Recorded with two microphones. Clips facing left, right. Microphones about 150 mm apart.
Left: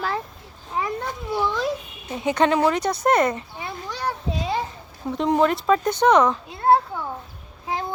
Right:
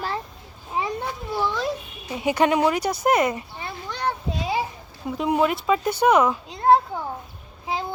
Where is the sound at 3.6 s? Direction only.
10° left (ahead or behind).